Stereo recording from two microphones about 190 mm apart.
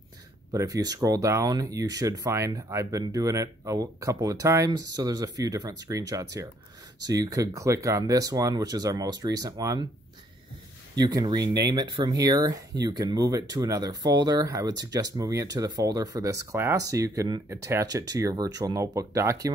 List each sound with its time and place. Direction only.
0.5 s speech: 20° right (ahead or behind)
11.0 s speech: 20° right (ahead or behind)